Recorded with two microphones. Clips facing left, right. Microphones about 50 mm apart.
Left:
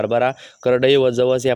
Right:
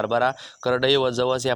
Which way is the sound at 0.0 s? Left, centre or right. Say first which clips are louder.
Left 4 dB; left.